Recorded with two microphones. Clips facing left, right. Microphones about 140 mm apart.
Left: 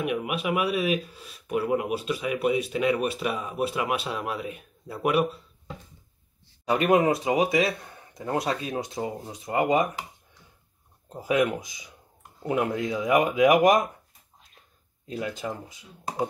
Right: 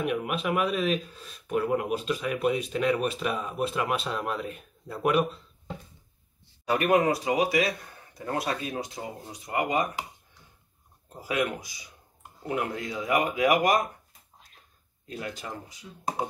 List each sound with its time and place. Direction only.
0.0 s speech: 5° left (ahead or behind)
6.7 s speech: 25° left (ahead or behind)
11.1 s speech: 20° left (ahead or behind)
15.0 s speech: 20° left (ahead or behind)